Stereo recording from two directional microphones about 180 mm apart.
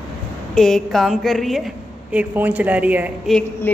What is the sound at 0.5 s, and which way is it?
A woman's voice, centre (ahead or behind).